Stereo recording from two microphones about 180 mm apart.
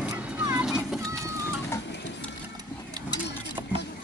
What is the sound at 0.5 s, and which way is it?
Children playing, 5° right (ahead or behind).